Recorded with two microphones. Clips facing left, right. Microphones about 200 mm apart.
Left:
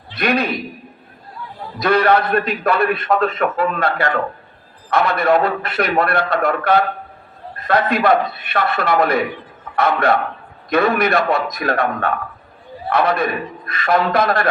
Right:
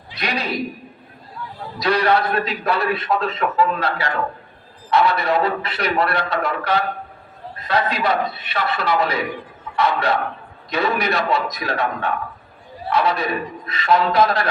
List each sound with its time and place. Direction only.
0.2 s a man's voice: 55° left (ahead or behind)
1.8 s a man's voice: 55° left (ahead or behind)